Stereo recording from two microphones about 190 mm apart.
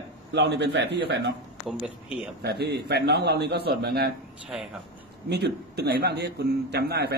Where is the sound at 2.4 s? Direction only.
60° right (ahead or behind).